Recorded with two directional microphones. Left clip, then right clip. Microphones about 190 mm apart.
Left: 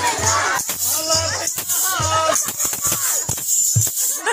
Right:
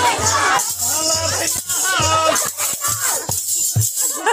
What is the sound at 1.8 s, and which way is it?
Music, 5° right (ahead or behind).